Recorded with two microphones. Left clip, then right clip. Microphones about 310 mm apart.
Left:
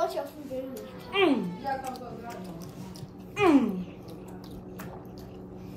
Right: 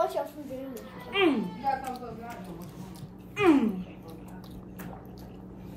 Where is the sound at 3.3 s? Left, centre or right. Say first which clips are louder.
Left 1 dB; centre.